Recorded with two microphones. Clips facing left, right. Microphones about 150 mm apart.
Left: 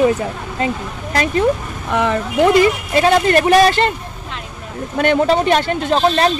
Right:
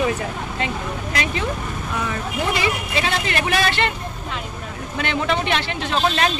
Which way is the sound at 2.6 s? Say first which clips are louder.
Left 9 dB; 45° left (ahead or behind).